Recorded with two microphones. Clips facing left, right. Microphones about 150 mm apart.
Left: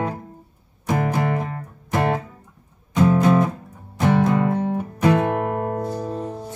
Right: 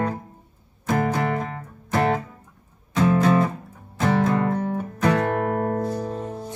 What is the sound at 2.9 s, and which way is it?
Music, 10° left (ahead or behind).